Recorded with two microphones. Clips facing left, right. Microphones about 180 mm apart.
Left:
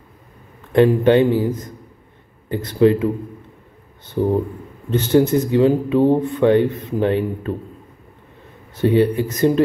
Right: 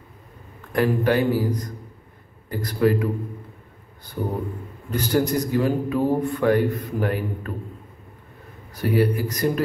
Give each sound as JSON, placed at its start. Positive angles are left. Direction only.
{"t": 0.7, "sound": "speech", "side_deg": 25}
{"t": 4.9, "sound": "speech", "side_deg": 25}
{"t": 8.7, "sound": "speech", "side_deg": 25}